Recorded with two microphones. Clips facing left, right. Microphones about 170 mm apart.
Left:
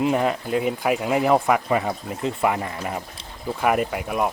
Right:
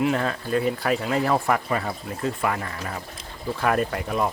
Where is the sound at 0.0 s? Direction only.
15° left (ahead or behind).